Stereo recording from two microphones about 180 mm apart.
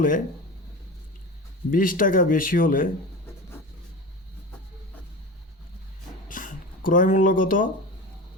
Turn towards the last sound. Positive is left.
turn(degrees=50)  # may be behind; listen again after turning